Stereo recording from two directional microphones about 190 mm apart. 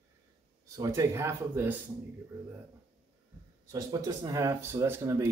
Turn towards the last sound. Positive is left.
turn(degrees=-15)  # may be behind; listen again after turning